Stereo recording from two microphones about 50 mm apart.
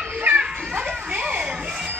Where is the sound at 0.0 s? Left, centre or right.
Right.